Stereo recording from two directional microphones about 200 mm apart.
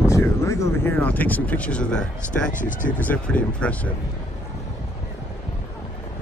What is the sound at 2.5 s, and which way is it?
Speech, 40° left (ahead or behind).